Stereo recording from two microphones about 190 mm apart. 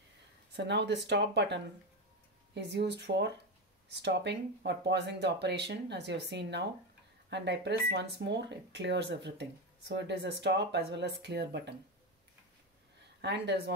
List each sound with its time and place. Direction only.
0.6 s speech: 65° right (ahead or behind)
13.2 s speech: 65° right (ahead or behind)